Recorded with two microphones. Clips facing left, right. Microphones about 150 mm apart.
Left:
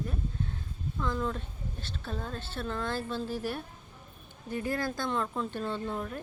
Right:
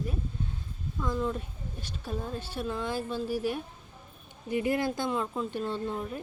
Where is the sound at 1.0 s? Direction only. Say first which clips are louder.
Right 2 dB; 10° right (ahead or behind).